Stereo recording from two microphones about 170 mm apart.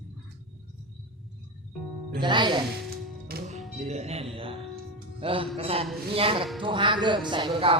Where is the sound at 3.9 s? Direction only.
40° right (ahead or behind).